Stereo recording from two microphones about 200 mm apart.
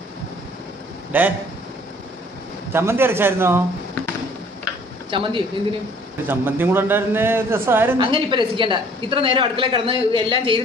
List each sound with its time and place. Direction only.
1.1 s a man's voice: 10° right (ahead or behind)
2.7 s a man's voice: 10° right (ahead or behind)
5.1 s a woman's voice: 25° right (ahead or behind)
6.2 s a man's voice: 10° right (ahead or behind)
8.0 s a woman's voice: 25° right (ahead or behind)